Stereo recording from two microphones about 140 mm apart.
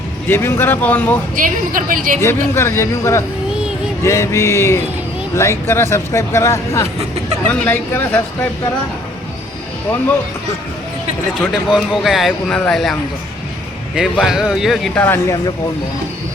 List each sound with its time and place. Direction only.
0.3 s speech: 15° left (ahead or behind)
1.4 s a woman's voice: 75° right (ahead or behind)
2.2 s speech: 20° left (ahead or behind)
11.7 s speech: centre (ahead or behind)
14.9 s speech: 15° left (ahead or behind)